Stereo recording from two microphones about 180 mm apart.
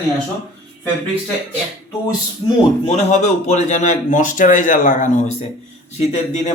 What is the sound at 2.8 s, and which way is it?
A man's voice, 35° left (ahead or behind).